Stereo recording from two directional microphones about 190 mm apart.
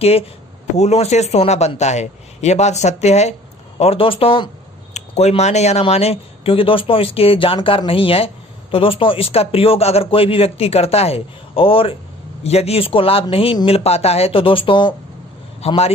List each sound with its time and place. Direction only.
0.7 s speech: 35° left (ahead or behind)